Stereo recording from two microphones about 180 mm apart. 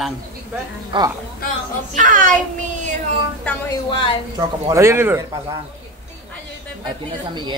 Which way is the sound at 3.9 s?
30° left (ahead or behind).